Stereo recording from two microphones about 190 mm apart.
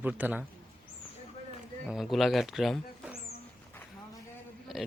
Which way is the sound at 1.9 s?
Centre (ahead or behind).